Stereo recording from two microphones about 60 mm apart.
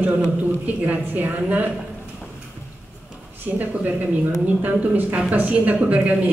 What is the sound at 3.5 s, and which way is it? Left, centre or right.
Speech, right.